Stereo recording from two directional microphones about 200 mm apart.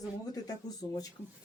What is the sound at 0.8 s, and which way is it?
Speech, 25° left (ahead or behind).